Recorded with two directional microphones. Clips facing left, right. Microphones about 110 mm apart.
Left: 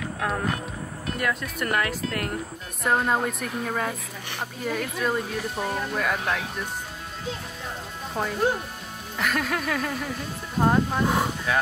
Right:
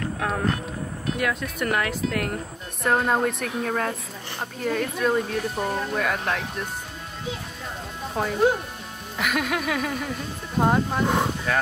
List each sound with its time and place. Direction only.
1.1 s speech: centre (ahead or behind)
8.1 s speech: centre (ahead or behind)